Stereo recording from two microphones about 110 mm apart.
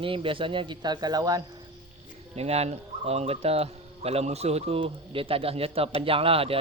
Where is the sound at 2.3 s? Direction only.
70° right (ahead or behind).